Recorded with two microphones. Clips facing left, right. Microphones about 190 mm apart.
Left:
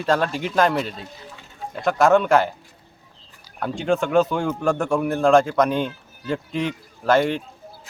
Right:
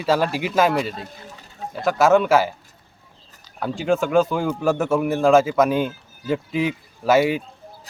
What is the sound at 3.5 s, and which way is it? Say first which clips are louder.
A man's voice: right 1 dB; 5° right (ahead or behind).